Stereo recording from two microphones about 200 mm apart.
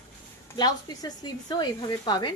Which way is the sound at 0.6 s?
20° left (ahead or behind).